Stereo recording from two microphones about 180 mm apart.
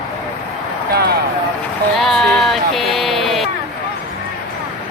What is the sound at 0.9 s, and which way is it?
Speech, 60° right (ahead or behind).